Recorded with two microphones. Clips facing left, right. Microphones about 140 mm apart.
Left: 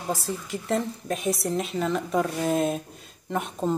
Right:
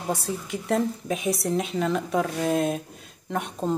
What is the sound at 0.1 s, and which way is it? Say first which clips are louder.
A woman's voice: right 1 dB; centre (ahead or behind).